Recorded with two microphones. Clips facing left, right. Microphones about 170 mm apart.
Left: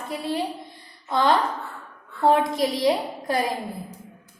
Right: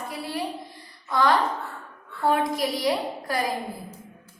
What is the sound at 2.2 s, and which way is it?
A child's voice, 25° left (ahead or behind).